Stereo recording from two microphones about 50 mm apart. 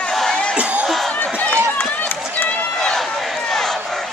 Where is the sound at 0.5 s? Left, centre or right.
Right.